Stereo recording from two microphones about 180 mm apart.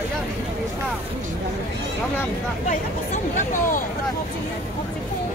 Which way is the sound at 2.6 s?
45° left (ahead or behind).